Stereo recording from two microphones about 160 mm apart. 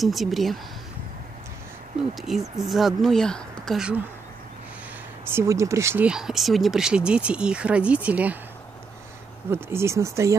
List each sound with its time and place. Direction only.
0.0 s speech: centre (ahead or behind)
2.1 s speech: centre (ahead or behind)
5.3 s speech: 20° right (ahead or behind)
6.0 s speech: 5° right (ahead or behind)
9.5 s speech: 15° right (ahead or behind)